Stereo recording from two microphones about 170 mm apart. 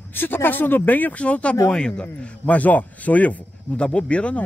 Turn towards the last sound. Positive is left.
turn(degrees=5)  # may be behind; listen again after turning